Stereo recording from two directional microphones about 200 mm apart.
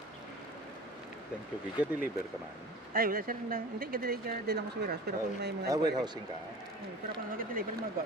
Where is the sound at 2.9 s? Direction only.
45° right (ahead or behind).